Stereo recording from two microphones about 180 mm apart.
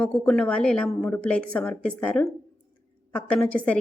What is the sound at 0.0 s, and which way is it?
A woman's voice, 5° left (ahead or behind).